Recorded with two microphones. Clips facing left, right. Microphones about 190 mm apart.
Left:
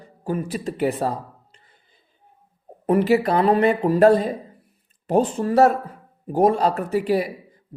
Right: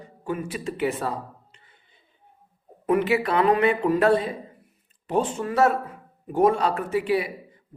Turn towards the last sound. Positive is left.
turn(degrees=40)  # may be behind; listen again after turning